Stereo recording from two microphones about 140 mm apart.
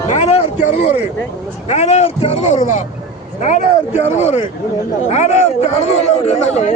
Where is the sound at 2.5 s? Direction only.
65° left (ahead or behind).